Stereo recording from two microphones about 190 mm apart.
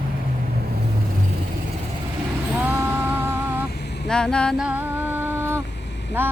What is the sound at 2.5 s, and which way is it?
Vehicle, 10° right (ahead or behind).